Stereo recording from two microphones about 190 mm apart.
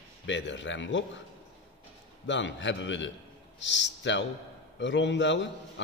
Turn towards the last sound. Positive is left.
turn(degrees=70)  # may be behind; listen again after turning